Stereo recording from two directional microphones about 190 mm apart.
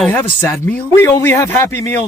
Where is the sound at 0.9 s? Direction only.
10° left (ahead or behind).